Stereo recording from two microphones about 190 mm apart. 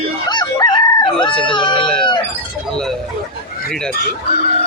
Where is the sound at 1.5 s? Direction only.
25° left (ahead or behind).